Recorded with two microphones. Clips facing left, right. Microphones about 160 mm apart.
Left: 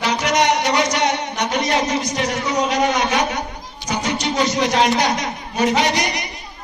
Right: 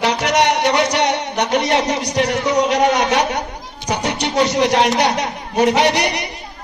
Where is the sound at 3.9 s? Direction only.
65° right (ahead or behind).